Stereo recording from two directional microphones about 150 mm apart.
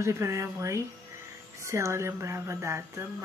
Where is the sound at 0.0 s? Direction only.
20° right (ahead or behind).